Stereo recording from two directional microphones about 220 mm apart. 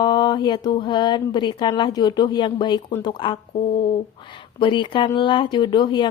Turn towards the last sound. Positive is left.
turn(degrees=20)  # may be behind; listen again after turning